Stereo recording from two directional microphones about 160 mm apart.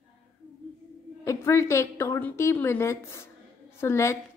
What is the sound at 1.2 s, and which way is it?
A woman's voice, 20° left (ahead or behind).